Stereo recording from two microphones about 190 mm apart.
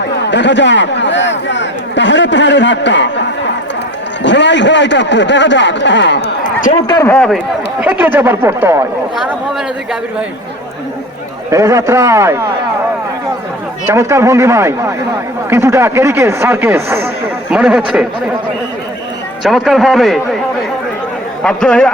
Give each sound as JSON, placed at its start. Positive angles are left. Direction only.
{"t": 0.3, "sound": "a man's voice", "side_deg": 70}
{"t": 6.4, "sound": "a sound", "side_deg": 45}
{"t": 6.8, "sound": "speech", "side_deg": 20}
{"t": 7.1, "sound": "speech", "side_deg": 0}
{"t": 11.5, "sound": "speech", "side_deg": -15}
{"t": 13.8, "sound": "speech", "side_deg": -15}
{"t": 19.4, "sound": "speech", "side_deg": 0}
{"t": 21.4, "sound": "speech", "side_deg": 5}